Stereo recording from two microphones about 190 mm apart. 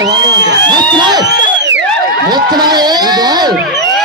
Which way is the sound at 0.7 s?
25° right (ahead or behind).